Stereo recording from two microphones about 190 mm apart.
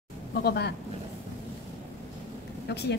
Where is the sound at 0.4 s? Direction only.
60° left (ahead or behind).